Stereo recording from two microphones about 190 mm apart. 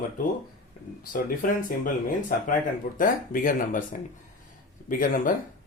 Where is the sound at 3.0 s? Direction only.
45° left (ahead or behind).